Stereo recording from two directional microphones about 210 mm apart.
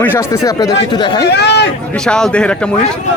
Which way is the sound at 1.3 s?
55° left (ahead or behind).